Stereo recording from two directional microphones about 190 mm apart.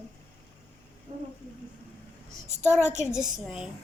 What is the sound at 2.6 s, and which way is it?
Child singing, 10° left (ahead or behind).